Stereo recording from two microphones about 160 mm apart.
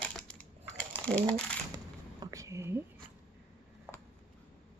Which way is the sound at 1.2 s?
20° right (ahead or behind).